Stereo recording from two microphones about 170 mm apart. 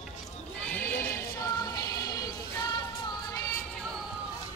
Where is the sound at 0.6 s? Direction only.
10° left (ahead or behind).